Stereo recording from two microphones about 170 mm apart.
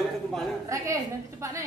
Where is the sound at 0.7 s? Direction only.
15° right (ahead or behind).